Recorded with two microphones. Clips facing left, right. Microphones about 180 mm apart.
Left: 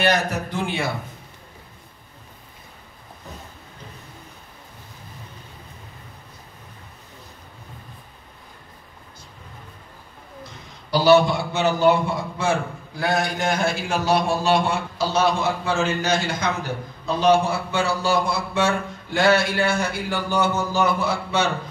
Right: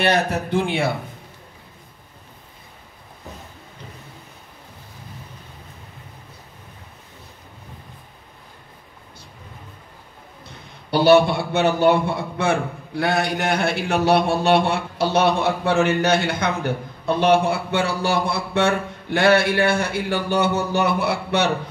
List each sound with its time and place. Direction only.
0.0 s speech: 30° right (ahead or behind)
10.9 s a man's voice: 60° right (ahead or behind)